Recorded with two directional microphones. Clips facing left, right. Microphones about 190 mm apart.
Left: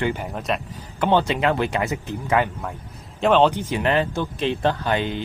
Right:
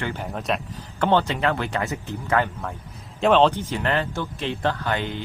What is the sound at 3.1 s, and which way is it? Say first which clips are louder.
Speech: even; centre (ahead or behind).